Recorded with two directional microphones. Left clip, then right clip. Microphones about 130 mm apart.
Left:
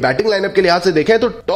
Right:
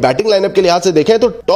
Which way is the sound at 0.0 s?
30° right (ahead or behind).